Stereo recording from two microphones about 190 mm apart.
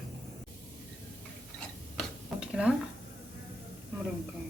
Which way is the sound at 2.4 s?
5° right (ahead or behind).